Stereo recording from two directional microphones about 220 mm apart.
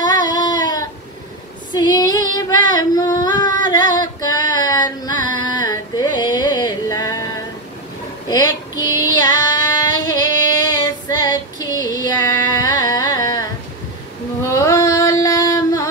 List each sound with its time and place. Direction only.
0.0 s a sound: 20° left (ahead or behind)
1.7 s female singing: 20° left (ahead or behind)
5.4 s carnatic music: 20° left (ahead or behind)
8.3 s female singing: 20° left (ahead or behind)
14.5 s singing: 15° left (ahead or behind)